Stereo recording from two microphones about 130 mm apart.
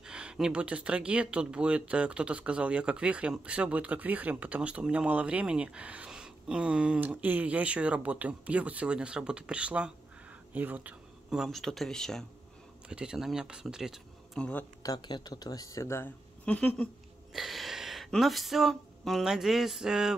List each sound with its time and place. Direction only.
0.0 s speech: 5° right (ahead or behind)
12.8 s speech: 5° right (ahead or behind)
14.4 s speech: 10° left (ahead or behind)
14.8 s speech: 30° left (ahead or behind)
16.4 s speech: 10° left (ahead or behind)
17.3 s a sound: centre (ahead or behind)